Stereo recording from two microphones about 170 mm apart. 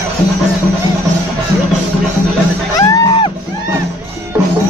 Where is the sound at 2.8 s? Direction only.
25° left (ahead or behind).